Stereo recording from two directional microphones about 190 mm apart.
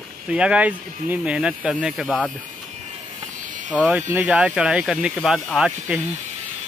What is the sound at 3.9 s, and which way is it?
Speech, 10° right (ahead or behind).